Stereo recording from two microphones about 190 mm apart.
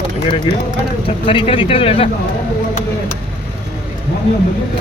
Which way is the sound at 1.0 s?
30° left (ahead or behind).